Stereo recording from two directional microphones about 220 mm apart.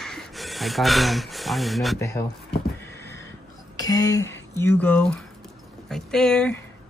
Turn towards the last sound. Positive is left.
turn(degrees=5)  # may be behind; listen again after turning